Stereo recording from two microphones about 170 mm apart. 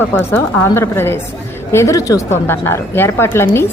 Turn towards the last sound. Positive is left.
turn(degrees=15)  # may be behind; listen again after turning